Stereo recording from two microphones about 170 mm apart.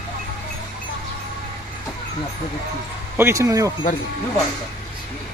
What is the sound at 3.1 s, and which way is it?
Speech, 15° right (ahead or behind).